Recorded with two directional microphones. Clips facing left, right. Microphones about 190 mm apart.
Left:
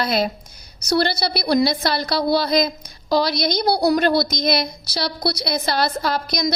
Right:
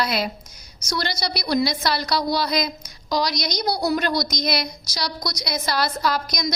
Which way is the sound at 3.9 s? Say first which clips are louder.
Left 5 dB; 30° left (ahead or behind).